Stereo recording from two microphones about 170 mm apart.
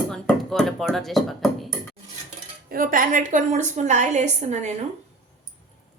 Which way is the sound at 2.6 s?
55° right (ahead or behind).